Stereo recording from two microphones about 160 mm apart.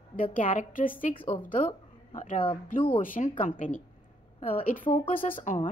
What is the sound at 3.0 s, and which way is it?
Speech, 60° left (ahead or behind).